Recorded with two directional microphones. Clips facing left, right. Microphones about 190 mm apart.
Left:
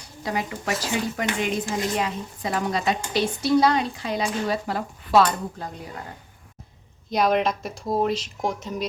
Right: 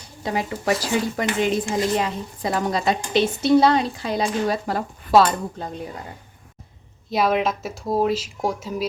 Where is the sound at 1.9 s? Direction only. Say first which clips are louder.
Right 3 dB; 30° right (ahead or behind).